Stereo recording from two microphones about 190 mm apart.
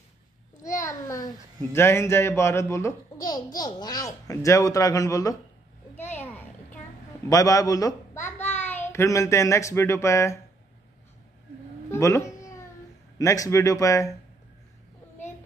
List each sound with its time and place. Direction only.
0.6 s a child's voice: 15° left (ahead or behind)
5.9 s a sound: 10° left (ahead or behind)
7.2 s a child's voice: 15° left (ahead or behind)
11.9 s speech: 15° left (ahead or behind)